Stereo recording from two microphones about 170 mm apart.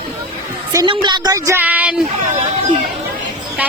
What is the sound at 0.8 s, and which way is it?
A woman's voice, 25° right (ahead or behind).